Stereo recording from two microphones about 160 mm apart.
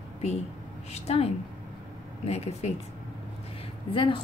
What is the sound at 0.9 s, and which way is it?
A woman's voice, 40° left (ahead or behind).